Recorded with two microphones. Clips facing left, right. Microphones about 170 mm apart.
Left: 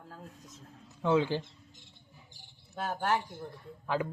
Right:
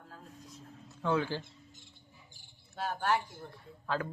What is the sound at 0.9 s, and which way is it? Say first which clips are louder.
Speech: left 4 dB; 20° left (ahead or behind).